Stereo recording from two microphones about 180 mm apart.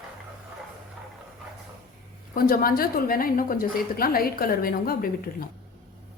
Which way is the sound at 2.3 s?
55° left (ahead or behind).